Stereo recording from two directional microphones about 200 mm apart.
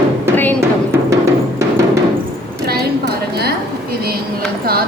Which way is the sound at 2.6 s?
55° right (ahead or behind).